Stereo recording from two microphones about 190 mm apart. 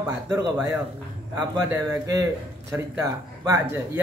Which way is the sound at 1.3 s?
15° right (ahead or behind).